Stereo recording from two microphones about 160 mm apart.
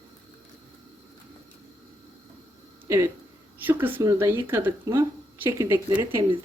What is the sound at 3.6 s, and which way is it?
Speech, 10° right (ahead or behind).